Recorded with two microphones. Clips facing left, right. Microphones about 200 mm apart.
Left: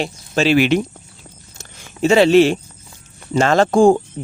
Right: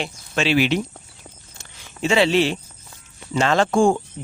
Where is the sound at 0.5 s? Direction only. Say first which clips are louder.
Left 4 dB; 55° left (ahead or behind).